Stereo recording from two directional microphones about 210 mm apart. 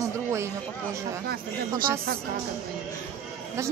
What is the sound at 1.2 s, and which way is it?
Speech, 45° right (ahead or behind).